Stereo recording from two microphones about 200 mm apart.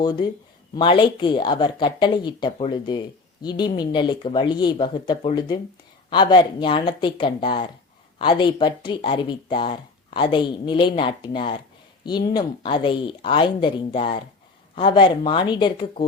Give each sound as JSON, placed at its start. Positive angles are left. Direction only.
{"t": 0.0, "sound": "speech", "side_deg": 20}